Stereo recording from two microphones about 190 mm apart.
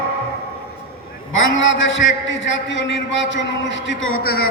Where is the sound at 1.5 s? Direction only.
80° left.